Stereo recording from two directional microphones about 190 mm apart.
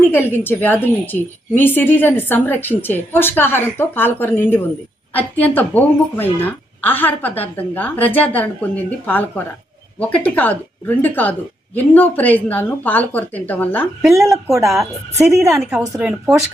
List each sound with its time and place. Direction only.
0.1 s a woman's voice: 10° left (ahead or behind)
14.1 s speech: 15° right (ahead or behind)
14.5 s speech: centre (ahead or behind)
16.0 s speech: 5° right (ahead or behind)